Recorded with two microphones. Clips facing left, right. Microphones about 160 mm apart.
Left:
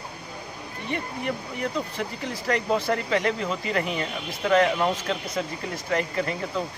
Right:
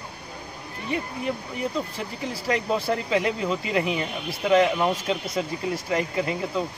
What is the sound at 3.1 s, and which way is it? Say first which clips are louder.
Speech: right 3 dB; 10° right (ahead or behind).